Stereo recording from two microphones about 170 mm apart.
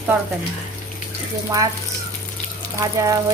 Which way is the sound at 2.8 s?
20° right (ahead or behind).